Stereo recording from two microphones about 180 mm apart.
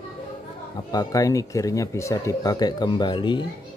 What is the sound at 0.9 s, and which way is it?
Speech, 20° left (ahead or behind).